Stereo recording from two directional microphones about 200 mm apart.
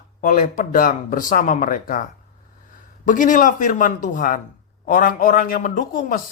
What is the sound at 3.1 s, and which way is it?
Speech, 40° left (ahead or behind).